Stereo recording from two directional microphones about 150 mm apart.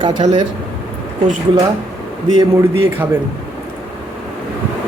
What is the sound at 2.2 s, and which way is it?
Speech, 20° right (ahead or behind).